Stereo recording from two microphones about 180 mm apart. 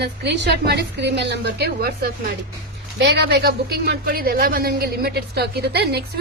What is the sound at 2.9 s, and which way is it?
A woman's voice, 70° right (ahead or behind).